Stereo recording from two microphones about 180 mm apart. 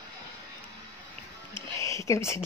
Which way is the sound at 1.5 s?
15° left (ahead or behind).